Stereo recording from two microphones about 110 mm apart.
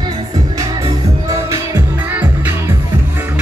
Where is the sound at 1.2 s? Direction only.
30° right (ahead or behind).